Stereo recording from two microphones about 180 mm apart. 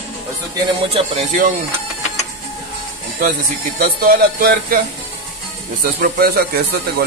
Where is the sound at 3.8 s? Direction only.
50° right (ahead or behind).